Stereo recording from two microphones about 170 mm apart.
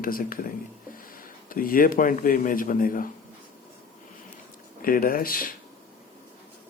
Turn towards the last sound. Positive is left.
turn(degrees=55)  # may be behind; listen again after turning